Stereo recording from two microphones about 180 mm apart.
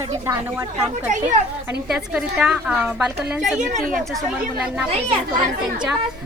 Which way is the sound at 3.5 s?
40° right (ahead or behind).